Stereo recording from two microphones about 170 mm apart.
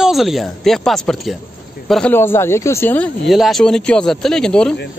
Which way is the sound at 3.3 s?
Centre (ahead or behind).